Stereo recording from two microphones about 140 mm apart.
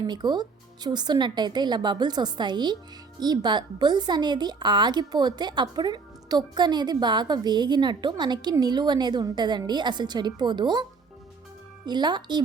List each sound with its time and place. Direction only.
0.0 s speech: 30° right (ahead or behind)
11.9 s speech: 30° right (ahead or behind)